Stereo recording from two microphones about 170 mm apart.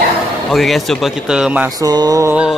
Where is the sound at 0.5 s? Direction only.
Centre (ahead or behind).